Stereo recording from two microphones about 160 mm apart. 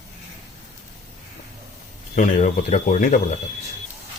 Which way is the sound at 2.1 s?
50° left (ahead or behind).